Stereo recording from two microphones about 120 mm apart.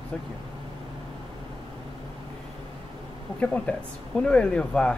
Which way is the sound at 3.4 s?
10° left (ahead or behind).